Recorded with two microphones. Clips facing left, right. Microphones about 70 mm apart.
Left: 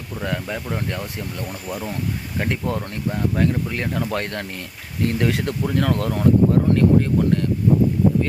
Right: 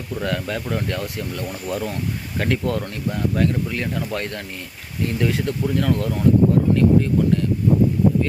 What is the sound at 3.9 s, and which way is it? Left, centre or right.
Speech, left.